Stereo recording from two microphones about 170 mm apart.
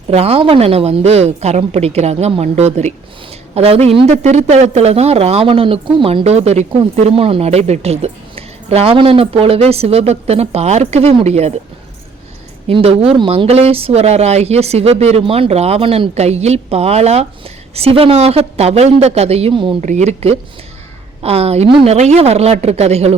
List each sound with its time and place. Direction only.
0.1 s a woman's voice: 35° right (ahead or behind)
12.6 s a woman's voice: 35° right (ahead or behind)
19.8 s a woman's voice: 45° right (ahead or behind)